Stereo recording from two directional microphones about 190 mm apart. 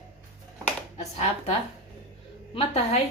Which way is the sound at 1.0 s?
35° left (ahead or behind).